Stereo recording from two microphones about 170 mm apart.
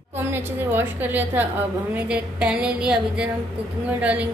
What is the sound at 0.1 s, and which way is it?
A woman's voice, 10° right (ahead or behind).